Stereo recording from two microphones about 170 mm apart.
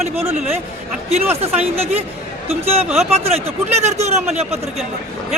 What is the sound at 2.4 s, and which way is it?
Speech, 35° right (ahead or behind).